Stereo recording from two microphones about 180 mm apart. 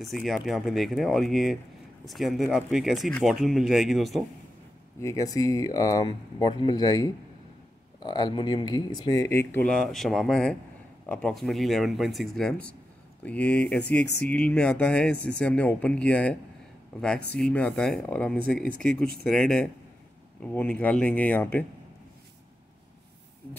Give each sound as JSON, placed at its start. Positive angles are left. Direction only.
{"t": 0.0, "sound": "speech", "side_deg": 0}
{"t": 5.0, "sound": "speech", "side_deg": 20}
{"t": 17.4, "sound": "speech", "side_deg": 5}